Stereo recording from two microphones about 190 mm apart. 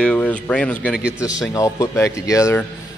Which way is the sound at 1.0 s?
5° right (ahead or behind).